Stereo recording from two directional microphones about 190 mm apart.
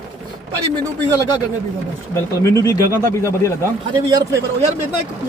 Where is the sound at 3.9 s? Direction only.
15° right (ahead or behind).